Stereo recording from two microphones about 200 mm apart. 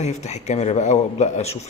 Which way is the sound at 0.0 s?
35° left (ahead or behind).